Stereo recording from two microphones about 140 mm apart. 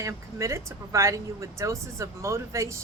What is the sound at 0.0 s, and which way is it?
Speech, 20° right (ahead or behind).